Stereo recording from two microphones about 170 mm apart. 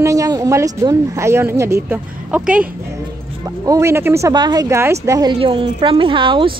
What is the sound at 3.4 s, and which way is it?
Speech, 20° right (ahead or behind).